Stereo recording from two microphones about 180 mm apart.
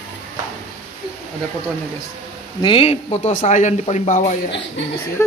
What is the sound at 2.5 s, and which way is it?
Speech, 30° left (ahead or behind).